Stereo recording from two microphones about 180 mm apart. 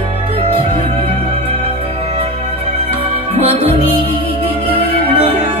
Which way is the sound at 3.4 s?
30° right (ahead or behind).